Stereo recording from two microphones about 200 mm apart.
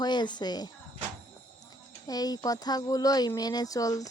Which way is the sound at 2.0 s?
20° left (ahead or behind).